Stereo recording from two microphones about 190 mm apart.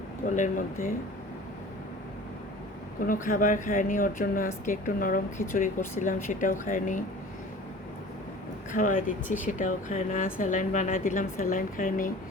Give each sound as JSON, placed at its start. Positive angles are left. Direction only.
{"t": 0.3, "sound": "speech", "side_deg": 40}
{"t": 3.1, "sound": "speech", "side_deg": 45}
{"t": 8.7, "sound": "speech", "side_deg": 45}